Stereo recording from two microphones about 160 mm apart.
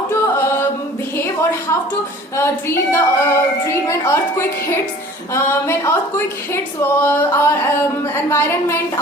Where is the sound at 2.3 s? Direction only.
15° left (ahead or behind).